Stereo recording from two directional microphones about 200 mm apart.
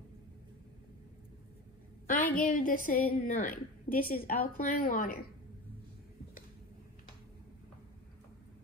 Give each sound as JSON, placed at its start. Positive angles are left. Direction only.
{"t": 2.0, "sound": "a woman's voice", "side_deg": 45}